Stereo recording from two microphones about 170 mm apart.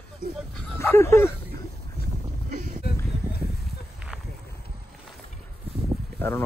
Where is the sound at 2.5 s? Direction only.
50° right (ahead or behind).